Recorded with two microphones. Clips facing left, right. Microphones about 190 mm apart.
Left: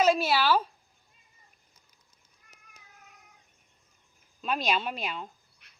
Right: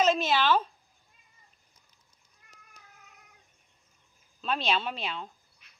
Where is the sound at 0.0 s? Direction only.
10° left (ahead or behind).